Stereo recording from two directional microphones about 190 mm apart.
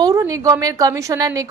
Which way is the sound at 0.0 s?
15° right (ahead or behind).